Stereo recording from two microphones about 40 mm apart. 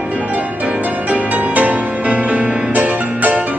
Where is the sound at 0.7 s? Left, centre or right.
Right.